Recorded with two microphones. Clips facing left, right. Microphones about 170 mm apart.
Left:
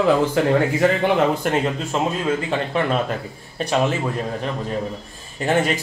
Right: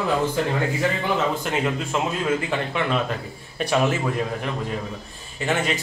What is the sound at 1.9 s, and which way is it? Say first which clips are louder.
Speech: left 4 dB; 35° left (ahead or behind).